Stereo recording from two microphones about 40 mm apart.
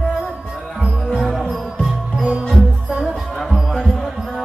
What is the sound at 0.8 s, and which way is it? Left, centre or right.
Music, centre.